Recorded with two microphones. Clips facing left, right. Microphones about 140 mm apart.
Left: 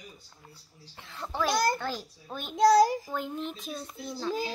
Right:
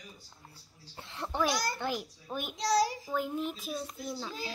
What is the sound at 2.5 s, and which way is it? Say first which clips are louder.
Child singing: left 9 dB; 50° left (ahead or behind).